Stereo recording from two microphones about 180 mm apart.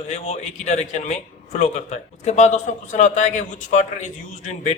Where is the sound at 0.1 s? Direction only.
40° left (ahead or behind).